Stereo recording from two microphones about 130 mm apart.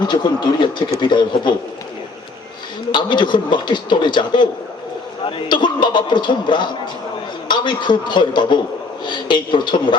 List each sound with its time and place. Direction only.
0.0 s a man's voice: 35° left (ahead or behind)
2.9 s a man's voice: 35° left (ahead or behind)